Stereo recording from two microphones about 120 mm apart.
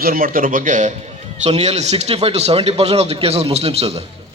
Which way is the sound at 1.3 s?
70° right (ahead or behind).